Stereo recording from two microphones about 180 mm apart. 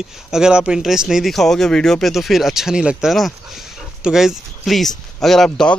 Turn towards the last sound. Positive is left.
turn(degrees=0)  # may be behind; listen again after turning